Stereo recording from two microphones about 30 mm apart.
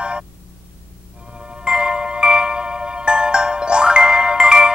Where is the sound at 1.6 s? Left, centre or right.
Right.